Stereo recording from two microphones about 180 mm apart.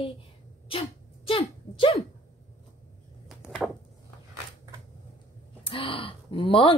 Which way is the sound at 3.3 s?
Centre (ahead or behind).